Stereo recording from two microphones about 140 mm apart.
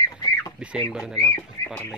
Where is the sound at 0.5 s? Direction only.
5° right (ahead or behind).